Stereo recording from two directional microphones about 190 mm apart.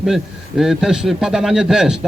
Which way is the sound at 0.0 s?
Centre (ahead or behind).